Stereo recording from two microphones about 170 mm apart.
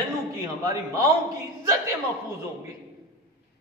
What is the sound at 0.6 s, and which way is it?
Speech, 20° right (ahead or behind).